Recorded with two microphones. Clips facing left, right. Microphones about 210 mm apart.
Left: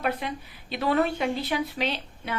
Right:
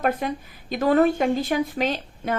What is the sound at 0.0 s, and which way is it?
Speech, 45° right (ahead or behind).